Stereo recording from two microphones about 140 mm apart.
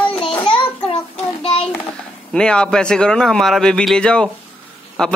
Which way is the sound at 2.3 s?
5° left (ahead or behind).